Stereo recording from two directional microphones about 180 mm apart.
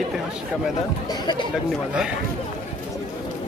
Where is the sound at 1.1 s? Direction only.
25° left (ahead or behind).